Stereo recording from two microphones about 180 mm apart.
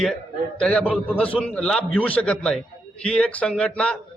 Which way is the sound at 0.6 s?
5° left (ahead or behind).